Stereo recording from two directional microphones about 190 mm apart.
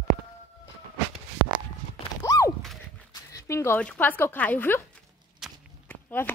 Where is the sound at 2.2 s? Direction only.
15° left (ahead or behind).